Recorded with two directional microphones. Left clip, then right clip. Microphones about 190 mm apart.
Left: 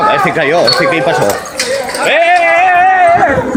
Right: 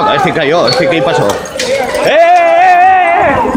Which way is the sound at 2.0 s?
40° right (ahead or behind).